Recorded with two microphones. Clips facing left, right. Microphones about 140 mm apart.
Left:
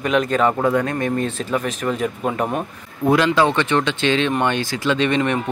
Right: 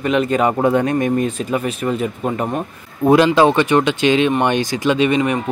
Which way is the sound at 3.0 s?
20° right (ahead or behind).